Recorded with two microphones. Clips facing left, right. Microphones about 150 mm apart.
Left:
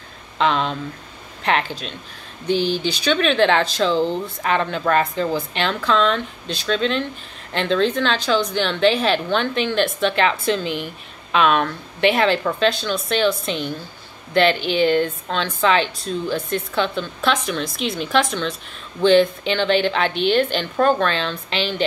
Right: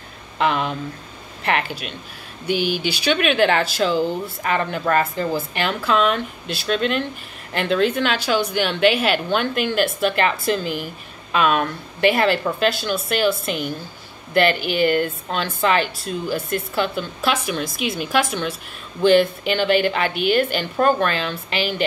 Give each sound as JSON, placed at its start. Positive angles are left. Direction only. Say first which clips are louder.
{"t": 0.4, "sound": "a woman's voice", "louder": "left 1 dB", "side_deg": -10}